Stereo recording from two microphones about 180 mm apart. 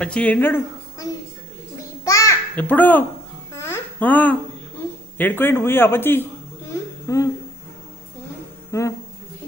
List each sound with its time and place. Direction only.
0.0 s speech: 5° left (ahead or behind)
1.8 s babbling: 15° left (ahead or behind)
5.1 s a man's voice: 10° left (ahead or behind)
8.7 s a man's voice: 15° left (ahead or behind)